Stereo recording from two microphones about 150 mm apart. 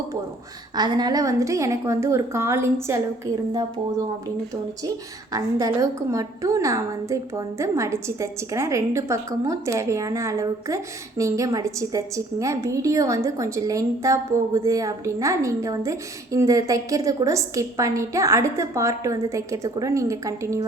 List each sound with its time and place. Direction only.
0.8 s a woman's voice: 25° right (ahead or behind)
5.3 s a woman's voice: 20° right (ahead or behind)